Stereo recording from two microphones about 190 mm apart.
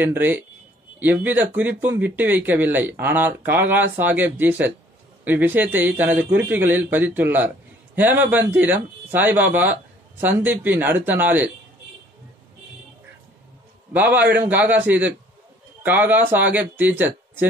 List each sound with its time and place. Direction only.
0.0 s a man's voice: 10° right (ahead or behind)
13.9 s a man's voice: 10° right (ahead or behind)